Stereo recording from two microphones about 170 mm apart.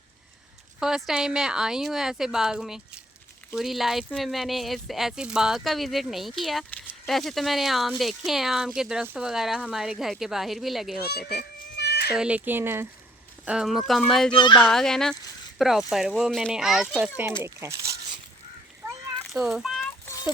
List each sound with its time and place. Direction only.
0.8 s speech: 5° right (ahead or behind)
11.8 s cat: 75° left (ahead or behind)
12.1 s speech: 5° right (ahead or behind)
14.3 s speech: 25° left (ahead or behind)
14.6 s speech: 5° left (ahead or behind)
17.4 s speech: 15° right (ahead or behind)
19.3 s a child's voice: centre (ahead or behind)
20.1 s a sound: 20° left (ahead or behind)